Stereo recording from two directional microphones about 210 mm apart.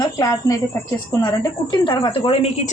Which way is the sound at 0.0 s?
20° left (ahead or behind).